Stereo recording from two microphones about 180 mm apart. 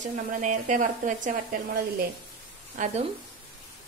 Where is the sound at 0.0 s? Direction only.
45° right (ahead or behind).